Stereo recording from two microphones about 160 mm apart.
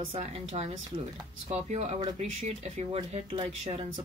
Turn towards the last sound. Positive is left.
turn(degrees=-35)  # may be behind; listen again after turning